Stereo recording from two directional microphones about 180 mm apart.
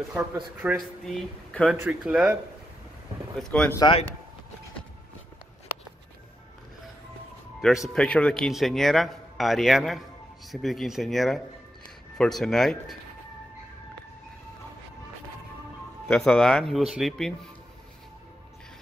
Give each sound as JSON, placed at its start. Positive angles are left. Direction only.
{"t": 0.6, "sound": "speech", "side_deg": -10}
{"t": 1.0, "sound": "a man's voice", "side_deg": 5}
{"t": 3.3, "sound": "a man's voice", "side_deg": 5}
{"t": 3.8, "sound": "speech", "side_deg": 30}
{"t": 7.6, "sound": "a man's voice", "side_deg": 0}
{"t": 16.1, "sound": "a man's voice", "side_deg": 5}